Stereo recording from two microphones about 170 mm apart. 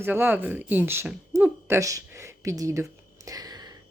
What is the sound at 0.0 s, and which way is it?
Speech, 10° right (ahead or behind).